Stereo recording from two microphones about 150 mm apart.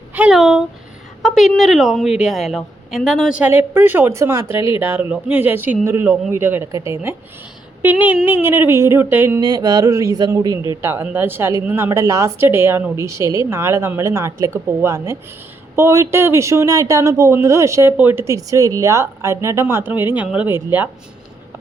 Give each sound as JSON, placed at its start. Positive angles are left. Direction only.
{"t": 0.1, "sound": "speech", "side_deg": -5}
{"t": 9.4, "sound": "speech", "side_deg": -25}